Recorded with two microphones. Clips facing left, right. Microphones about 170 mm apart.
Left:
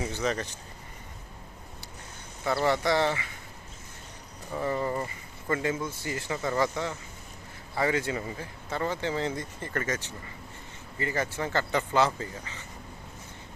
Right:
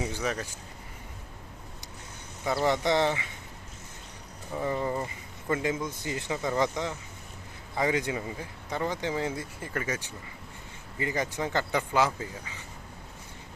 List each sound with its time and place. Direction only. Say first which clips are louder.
0.0 s speech: left 1 dB; 10° right (ahead or behind)
2.4 s speech: even; 15° right (ahead or behind)
4.5 s speech: even; 15° right (ahead or behind)